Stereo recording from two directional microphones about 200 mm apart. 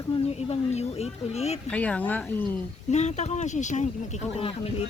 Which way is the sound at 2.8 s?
35° left (ahead or behind).